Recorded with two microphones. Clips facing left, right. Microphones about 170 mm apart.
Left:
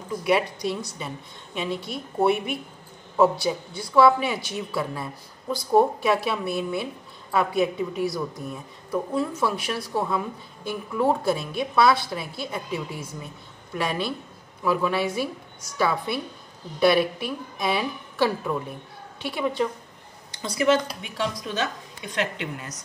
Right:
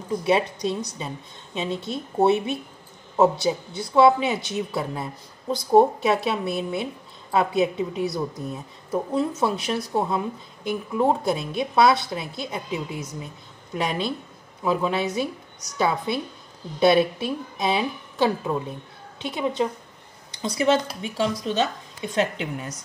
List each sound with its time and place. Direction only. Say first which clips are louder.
0.2 s a woman's voice: even; 25° right (ahead or behind)